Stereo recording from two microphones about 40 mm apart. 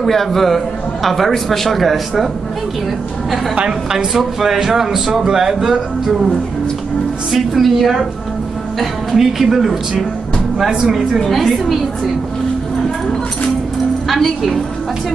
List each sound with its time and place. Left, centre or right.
0.0 s speech: centre
3.5 s a woman's voice: right
4.1 s speech: centre
7.3 s speech: centre
11.1 s speech: centre
14.0 s speech: centre